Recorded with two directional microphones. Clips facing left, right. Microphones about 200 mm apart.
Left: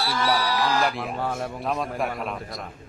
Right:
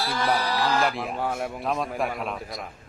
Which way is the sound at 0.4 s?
35° right (ahead or behind).